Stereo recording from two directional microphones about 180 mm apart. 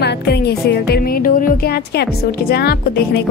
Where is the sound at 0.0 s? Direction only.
65° left (ahead or behind).